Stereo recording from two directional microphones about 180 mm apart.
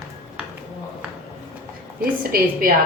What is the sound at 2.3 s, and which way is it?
Speech, 55° right (ahead or behind).